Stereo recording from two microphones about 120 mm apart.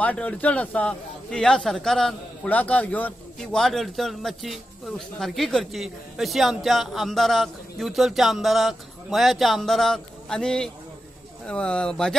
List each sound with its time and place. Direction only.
0.0 s a man's voice: 10° left (ahead or behind)